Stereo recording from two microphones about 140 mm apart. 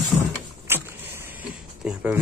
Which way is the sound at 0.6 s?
15° right (ahead or behind).